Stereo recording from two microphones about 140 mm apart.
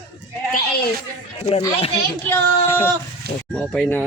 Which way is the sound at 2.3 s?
15° left (ahead or behind).